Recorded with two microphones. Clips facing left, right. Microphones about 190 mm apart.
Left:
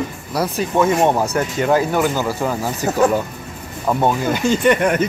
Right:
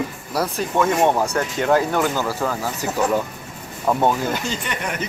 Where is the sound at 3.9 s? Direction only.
5° left (ahead or behind).